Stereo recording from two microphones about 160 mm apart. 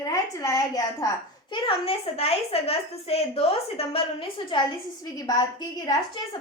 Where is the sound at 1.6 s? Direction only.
35° left (ahead or behind).